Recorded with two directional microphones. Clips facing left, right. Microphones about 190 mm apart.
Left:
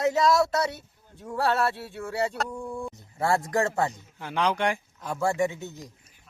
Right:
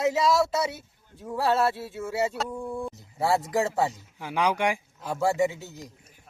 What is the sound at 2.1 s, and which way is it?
Speech, 5° right (ahead or behind).